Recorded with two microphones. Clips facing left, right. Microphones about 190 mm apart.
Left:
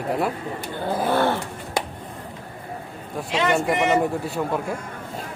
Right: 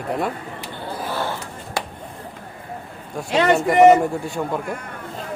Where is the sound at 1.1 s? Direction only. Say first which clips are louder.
Left 6 dB; 60° left (ahead or behind).